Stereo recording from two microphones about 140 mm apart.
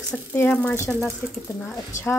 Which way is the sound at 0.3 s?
15° left (ahead or behind).